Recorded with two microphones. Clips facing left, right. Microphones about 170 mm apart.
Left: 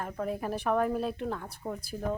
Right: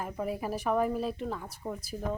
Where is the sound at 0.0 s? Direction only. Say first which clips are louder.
Even; 5° right (ahead or behind).